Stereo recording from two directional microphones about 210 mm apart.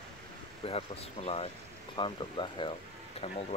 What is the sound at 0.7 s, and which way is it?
Speech, 30° left (ahead or behind).